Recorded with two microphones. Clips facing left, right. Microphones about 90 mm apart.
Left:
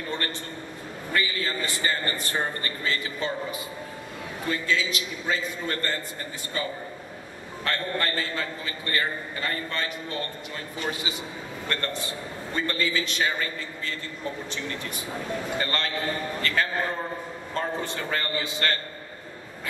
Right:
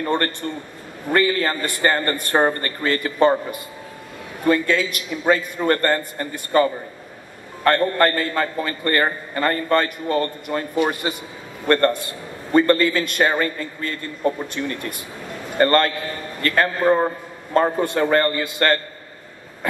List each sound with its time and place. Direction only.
0.0 s a man's voice: 55° right (ahead or behind)